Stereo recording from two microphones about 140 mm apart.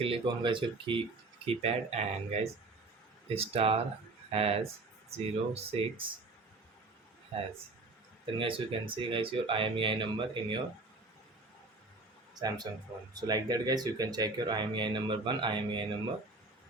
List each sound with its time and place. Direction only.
0.0 s speech: 40° right (ahead or behind)
1.5 s speech: 50° right (ahead or behind)
7.3 s speech: 45° right (ahead or behind)
12.4 s speech: 30° right (ahead or behind)